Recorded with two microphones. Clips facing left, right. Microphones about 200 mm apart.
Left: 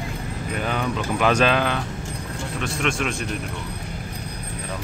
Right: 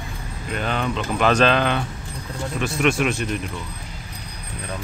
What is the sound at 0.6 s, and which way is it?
Speech, 10° left (ahead or behind).